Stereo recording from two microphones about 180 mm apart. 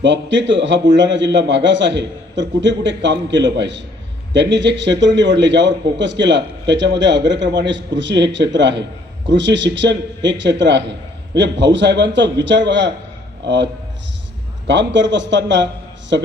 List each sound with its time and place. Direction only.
0.0 s a man's voice: 85° right
14.7 s a man's voice: 80° right